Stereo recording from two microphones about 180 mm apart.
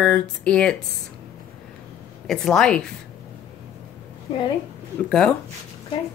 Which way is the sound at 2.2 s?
5° left (ahead or behind).